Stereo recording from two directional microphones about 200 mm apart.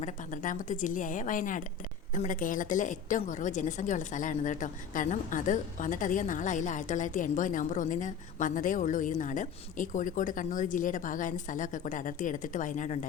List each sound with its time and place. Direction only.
0.0 s a woman's voice: 40° left (ahead or behind)